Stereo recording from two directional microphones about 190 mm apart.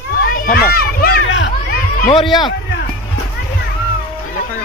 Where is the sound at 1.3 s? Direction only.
75° left (ahead or behind).